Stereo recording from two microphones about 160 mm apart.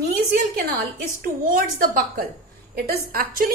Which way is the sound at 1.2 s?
60° right (ahead or behind).